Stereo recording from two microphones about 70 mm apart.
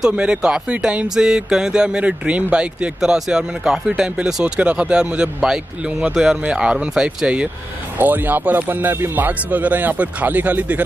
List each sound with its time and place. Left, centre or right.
0.0 s speech: centre
8.0 s speech: right